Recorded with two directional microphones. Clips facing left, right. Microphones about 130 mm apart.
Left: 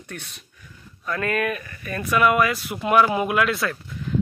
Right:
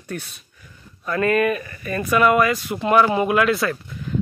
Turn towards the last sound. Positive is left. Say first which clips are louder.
# right 4 dB
turn(degrees=0)  # may be behind; listen again after turning